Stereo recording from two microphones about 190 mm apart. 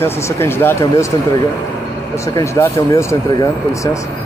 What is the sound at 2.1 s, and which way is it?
Speech, 15° left (ahead or behind).